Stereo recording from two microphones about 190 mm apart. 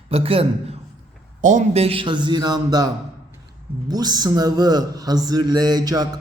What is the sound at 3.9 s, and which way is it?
A man's voice, 20° right (ahead or behind).